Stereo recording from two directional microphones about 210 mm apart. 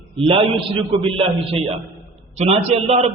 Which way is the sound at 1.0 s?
25° right (ahead or behind).